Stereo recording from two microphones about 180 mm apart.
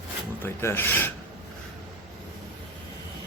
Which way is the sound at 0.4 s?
15° left (ahead or behind).